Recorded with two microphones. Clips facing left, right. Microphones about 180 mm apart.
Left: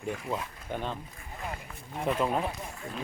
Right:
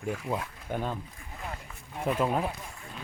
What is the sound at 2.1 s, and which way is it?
Speech, 5° right (ahead or behind).